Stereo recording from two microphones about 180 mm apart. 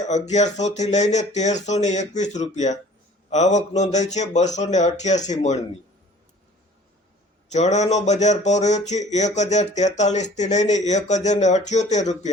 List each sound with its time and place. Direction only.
0.0 s speech: 40° left (ahead or behind)
7.5 s speech: 40° left (ahead or behind)